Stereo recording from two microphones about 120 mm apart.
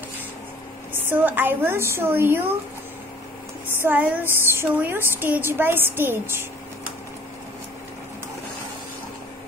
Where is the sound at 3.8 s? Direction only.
15° right (ahead or behind).